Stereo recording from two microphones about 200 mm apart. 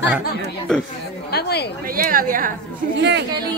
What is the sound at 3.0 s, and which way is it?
Speech, 60° right (ahead or behind).